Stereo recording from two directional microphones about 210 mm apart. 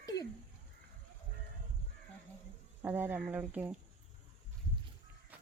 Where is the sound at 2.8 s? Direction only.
10° right (ahead or behind).